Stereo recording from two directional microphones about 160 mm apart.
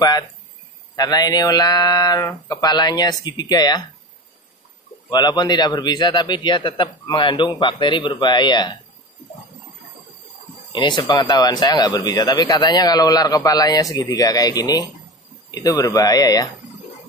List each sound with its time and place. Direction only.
0.9 s speech: 25° left (ahead or behind)
5.1 s speech: 25° left (ahead or behind)
10.7 s speech: 30° left (ahead or behind)